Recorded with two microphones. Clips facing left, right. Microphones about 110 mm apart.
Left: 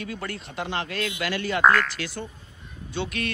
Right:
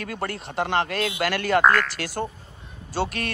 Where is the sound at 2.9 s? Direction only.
40° right (ahead or behind).